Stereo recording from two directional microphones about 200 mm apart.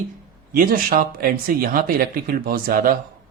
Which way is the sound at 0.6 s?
45° right (ahead or behind).